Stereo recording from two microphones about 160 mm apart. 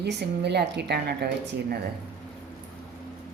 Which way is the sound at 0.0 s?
90° right.